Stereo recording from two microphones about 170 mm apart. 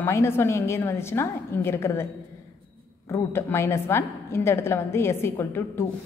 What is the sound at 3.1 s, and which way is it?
A woman's voice, 15° left (ahead or behind).